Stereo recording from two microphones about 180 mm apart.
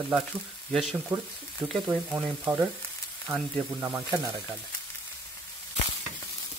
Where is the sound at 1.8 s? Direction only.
Centre (ahead or behind).